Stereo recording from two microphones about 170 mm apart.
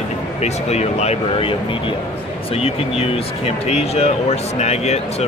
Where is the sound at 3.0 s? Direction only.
35° left (ahead or behind).